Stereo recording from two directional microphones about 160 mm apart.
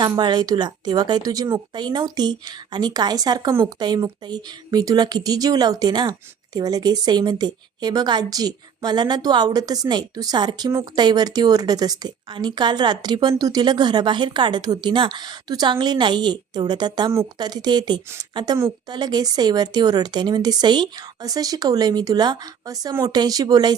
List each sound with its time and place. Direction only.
0.0 s speech: 25° right (ahead or behind)